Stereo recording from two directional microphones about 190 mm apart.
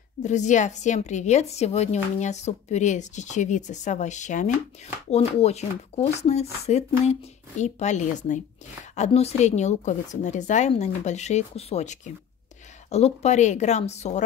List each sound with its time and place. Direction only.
0.2 s a woman's voice: 40° left (ahead or behind)